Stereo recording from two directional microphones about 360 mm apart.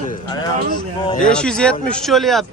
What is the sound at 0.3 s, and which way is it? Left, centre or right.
Speech, centre.